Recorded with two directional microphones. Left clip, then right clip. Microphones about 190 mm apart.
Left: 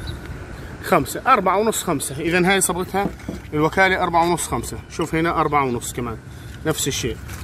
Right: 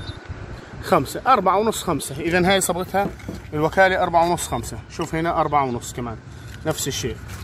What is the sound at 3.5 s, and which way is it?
Speech, 25° right (ahead or behind).